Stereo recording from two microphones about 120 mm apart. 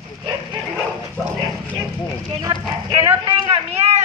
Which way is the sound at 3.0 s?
50° right (ahead or behind).